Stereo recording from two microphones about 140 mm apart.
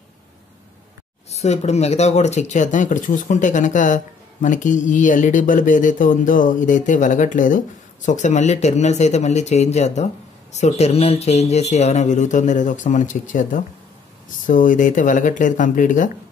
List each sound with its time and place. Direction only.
1.3 s speech: 55° left (ahead or behind); by 16.1 s 70° left (ahead or behind)